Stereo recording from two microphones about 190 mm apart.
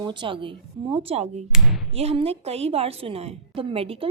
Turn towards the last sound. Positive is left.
turn(degrees=-30)  # may be behind; listen again after turning